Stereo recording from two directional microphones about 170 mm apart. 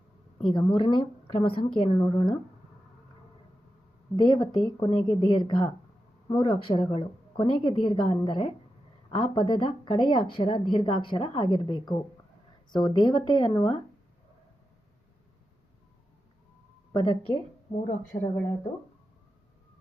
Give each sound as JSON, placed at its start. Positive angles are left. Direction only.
{"t": 0.5, "sound": "speech", "side_deg": 30}
{"t": 4.2, "sound": "speech", "side_deg": 25}
{"t": 16.9, "sound": "speech", "side_deg": 30}